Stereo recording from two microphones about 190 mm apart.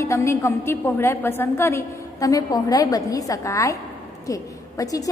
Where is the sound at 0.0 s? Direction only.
15° left (ahead or behind).